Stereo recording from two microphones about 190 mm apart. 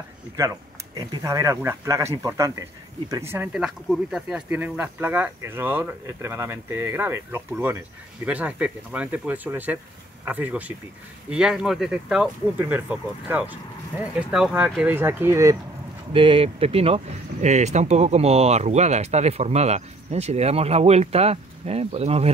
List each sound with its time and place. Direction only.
0.9 s speech: 15° right (ahead or behind)
16.1 s speech: 25° right (ahead or behind)